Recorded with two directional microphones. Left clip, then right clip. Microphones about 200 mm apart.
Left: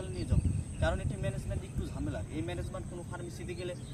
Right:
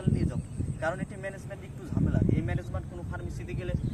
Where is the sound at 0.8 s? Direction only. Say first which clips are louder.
Right 2 dB; 5° right (ahead or behind).